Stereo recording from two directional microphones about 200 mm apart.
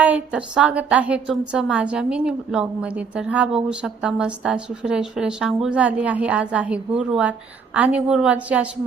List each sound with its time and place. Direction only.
0.0 s a woman's voice: 5° right (ahead or behind)